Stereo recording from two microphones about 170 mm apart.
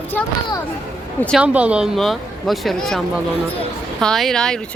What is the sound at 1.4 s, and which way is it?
Speech, 10° right (ahead or behind).